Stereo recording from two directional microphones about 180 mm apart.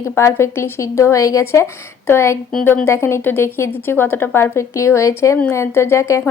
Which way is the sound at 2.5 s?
5° left (ahead or behind).